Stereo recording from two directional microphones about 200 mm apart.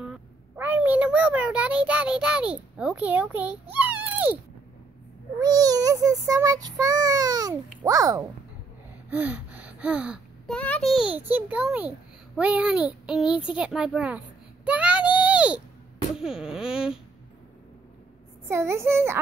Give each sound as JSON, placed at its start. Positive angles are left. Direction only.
{"t": 0.6, "sound": "a child's voice", "side_deg": -10}
{"t": 3.8, "sound": "a sound", "side_deg": -10}
{"t": 5.4, "sound": "child singing", "side_deg": -20}
{"t": 7.8, "sound": "a child's voice", "side_deg": -15}
{"t": 18.5, "sound": "a child's voice", "side_deg": -15}